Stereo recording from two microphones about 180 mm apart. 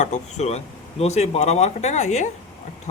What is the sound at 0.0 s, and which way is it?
A man's voice, 40° left (ahead or behind).